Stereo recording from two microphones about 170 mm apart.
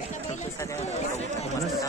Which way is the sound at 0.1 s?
45° left (ahead or behind).